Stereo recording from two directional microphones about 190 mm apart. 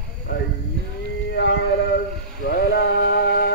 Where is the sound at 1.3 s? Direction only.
65° left (ahead or behind).